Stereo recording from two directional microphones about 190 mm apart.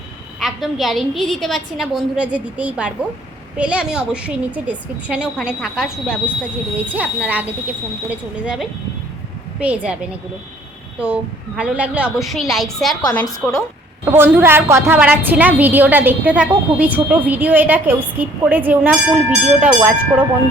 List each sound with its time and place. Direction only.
0.3 s a woman's voice: centre (ahead or behind)
13.1 s a woman's voice: 20° left (ahead or behind)
14.0 s a woman's voice: 10° right (ahead or behind)